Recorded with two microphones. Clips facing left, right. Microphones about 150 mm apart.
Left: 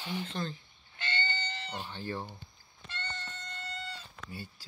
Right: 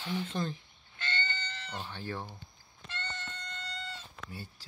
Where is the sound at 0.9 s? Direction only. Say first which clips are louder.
Left 1 dB; 15° left (ahead or behind).